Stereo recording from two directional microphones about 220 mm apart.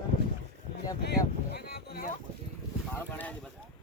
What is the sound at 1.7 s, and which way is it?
Speech, 45° left (ahead or behind).